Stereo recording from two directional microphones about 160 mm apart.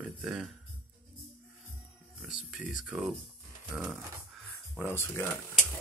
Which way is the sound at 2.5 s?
5° right (ahead or behind).